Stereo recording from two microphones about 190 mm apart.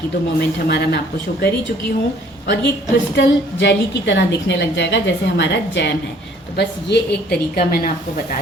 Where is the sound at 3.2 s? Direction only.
65° left (ahead or behind).